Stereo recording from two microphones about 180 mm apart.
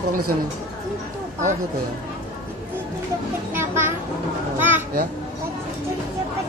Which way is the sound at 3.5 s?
15° right (ahead or behind).